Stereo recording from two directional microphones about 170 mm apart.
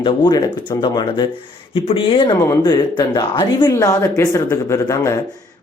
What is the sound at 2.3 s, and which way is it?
A man's voice, 15° left (ahead or behind).